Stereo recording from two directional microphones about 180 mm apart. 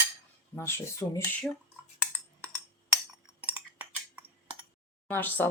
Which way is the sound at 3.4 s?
10° right (ahead or behind).